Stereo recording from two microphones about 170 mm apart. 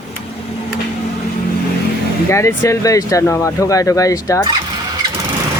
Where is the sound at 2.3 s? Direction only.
15° left (ahead or behind).